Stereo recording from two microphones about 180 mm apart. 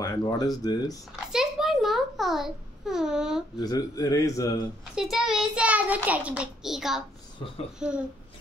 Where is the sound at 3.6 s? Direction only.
20° left (ahead or behind).